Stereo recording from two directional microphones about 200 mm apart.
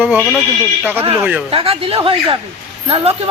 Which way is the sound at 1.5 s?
25° right (ahead or behind).